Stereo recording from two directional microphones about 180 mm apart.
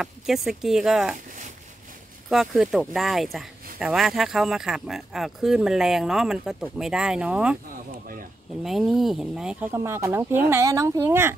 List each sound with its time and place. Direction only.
0.0 s speech: centre (ahead or behind)
2.2 s speech: centre (ahead or behind)
7.7 s a sound: 50° right (ahead or behind)
8.6 s speech: centre (ahead or behind)